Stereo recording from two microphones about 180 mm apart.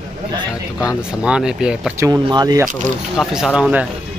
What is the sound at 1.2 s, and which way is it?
Speech, 5° right (ahead or behind).